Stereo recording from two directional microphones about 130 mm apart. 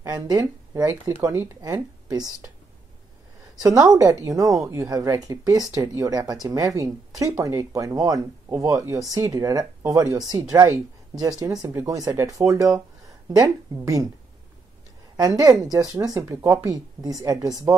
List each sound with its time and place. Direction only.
0.0 s speech: 30° right (ahead or behind)
3.6 s speech: 30° right (ahead or behind)
15.1 s speech: 30° right (ahead or behind)